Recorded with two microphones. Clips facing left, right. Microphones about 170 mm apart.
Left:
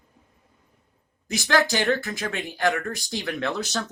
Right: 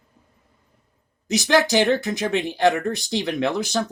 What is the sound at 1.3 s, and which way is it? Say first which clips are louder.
Speech: right 4 dB; 20° right (ahead or behind).